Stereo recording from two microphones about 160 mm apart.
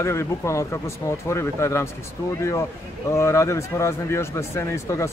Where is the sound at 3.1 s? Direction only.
15° left (ahead or behind).